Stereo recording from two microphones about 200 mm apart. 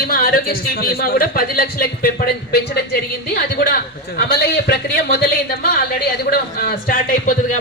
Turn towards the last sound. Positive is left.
turn(degrees=40)  # may be behind; listen again after turning